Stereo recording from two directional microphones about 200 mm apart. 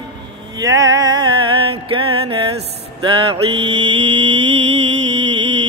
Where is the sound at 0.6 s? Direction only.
15° right (ahead or behind).